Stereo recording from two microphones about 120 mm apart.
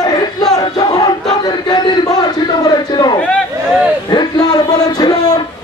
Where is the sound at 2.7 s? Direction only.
35° left (ahead or behind).